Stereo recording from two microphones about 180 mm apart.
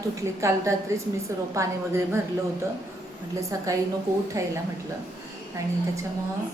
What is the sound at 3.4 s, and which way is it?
A woman's voice, 15° right (ahead or behind).